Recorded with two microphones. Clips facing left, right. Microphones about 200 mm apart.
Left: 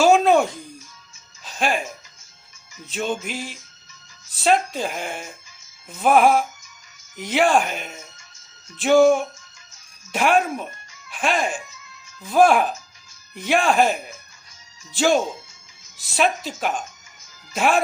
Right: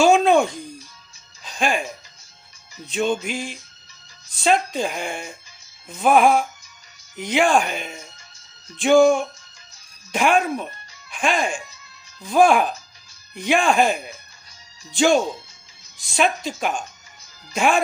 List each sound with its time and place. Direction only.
0.0 s music: 5° left (ahead or behind)
1.5 s music: 5° left (ahead or behind)
2.9 s speech: 5° left (ahead or behind)
11.6 s music: 35° right (ahead or behind)
12.2 s speech: 5° left (ahead or behind)